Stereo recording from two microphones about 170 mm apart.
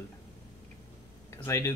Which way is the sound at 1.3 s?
15° left (ahead or behind).